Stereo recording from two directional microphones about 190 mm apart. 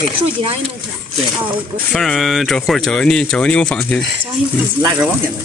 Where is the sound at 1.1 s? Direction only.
Centre (ahead or behind).